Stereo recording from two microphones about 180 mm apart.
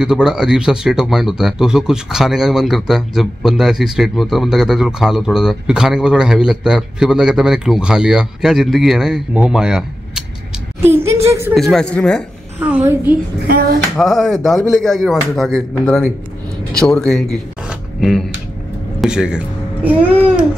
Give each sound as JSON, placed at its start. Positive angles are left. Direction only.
{"t": 0.0, "sound": "speech", "side_deg": -5}
{"t": 10.8, "sound": "a sound", "side_deg": -15}
{"t": 11.5, "sound": "speech", "side_deg": 0}
{"t": 12.5, "sound": "a woman's voice", "side_deg": -10}
{"t": 13.9, "sound": "speech", "side_deg": 0}